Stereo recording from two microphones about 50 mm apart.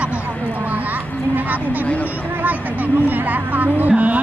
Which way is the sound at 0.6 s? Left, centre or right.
Right.